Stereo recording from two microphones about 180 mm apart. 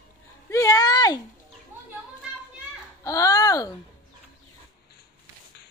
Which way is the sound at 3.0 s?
20° left (ahead or behind).